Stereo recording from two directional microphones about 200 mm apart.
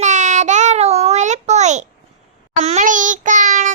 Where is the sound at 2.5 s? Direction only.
35° right (ahead or behind).